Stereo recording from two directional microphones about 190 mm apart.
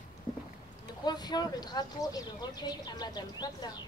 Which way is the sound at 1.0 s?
20° left (ahead or behind).